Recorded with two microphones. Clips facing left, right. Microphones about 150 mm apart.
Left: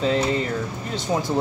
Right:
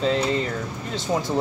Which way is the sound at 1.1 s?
10° left (ahead or behind).